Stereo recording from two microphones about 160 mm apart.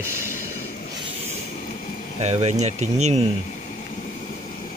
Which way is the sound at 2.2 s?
45° right (ahead or behind).